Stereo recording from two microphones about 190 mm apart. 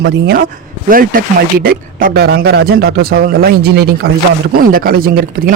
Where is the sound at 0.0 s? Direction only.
55° right (ahead or behind).